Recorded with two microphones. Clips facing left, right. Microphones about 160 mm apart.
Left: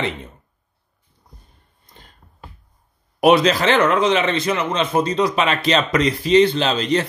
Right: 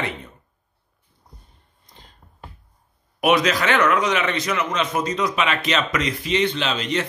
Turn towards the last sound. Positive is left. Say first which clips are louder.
# left 5 dB
turn(degrees=35)  # may be behind; listen again after turning